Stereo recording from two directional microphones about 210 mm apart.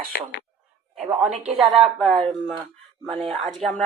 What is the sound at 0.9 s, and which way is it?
Speech, 5° right (ahead or behind).